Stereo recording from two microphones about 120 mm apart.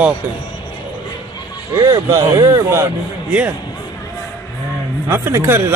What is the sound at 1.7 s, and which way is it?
Speech, 30° right (ahead or behind).